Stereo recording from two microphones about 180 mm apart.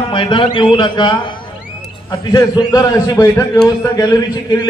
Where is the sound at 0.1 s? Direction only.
25° left (ahead or behind).